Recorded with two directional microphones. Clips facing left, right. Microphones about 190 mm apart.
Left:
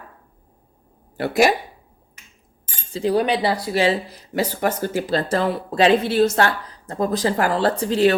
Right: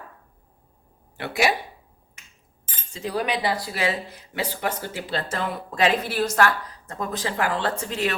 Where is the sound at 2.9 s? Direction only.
30° left (ahead or behind).